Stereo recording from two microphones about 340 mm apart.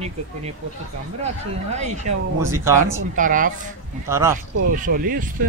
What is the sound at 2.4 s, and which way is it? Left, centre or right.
Speech, centre.